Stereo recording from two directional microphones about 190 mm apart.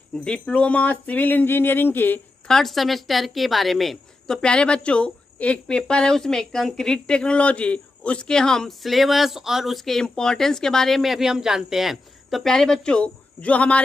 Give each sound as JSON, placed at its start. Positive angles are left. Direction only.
{"t": 0.2, "sound": "speech", "side_deg": 5}